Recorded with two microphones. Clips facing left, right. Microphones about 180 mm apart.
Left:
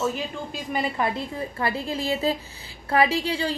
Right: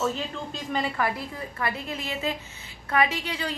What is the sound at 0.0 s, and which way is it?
A woman's voice, 10° left (ahead or behind).